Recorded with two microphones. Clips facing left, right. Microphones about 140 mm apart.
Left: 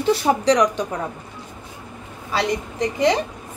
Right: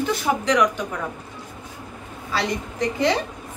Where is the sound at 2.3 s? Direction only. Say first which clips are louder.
Left 3 dB; 20° left (ahead or behind).